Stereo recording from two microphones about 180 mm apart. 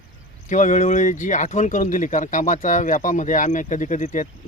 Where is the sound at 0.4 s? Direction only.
45° left (ahead or behind).